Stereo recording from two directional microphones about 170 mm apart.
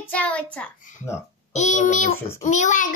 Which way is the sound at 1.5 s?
45° left (ahead or behind).